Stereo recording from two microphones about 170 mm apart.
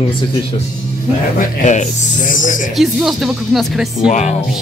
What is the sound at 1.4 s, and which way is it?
Speech, 45° left (ahead or behind).